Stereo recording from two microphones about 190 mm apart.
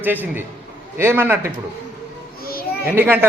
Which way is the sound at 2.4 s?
50° left (ahead or behind).